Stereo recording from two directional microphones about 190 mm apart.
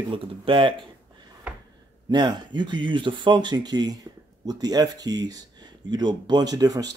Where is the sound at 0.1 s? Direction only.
25° right (ahead or behind).